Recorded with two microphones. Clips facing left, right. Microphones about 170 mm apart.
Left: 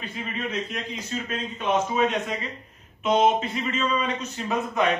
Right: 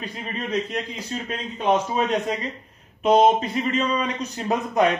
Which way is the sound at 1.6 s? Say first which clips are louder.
Right 2 dB; 35° right (ahead or behind).